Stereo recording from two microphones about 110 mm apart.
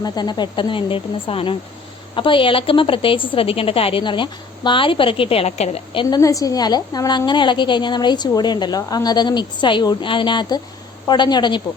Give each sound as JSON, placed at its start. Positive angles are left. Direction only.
{"t": 0.0, "sound": "a woman's voice", "side_deg": 40}
{"t": 5.9, "sound": "a woman's voice", "side_deg": 50}
{"t": 6.1, "sound": "a woman's voice", "side_deg": 30}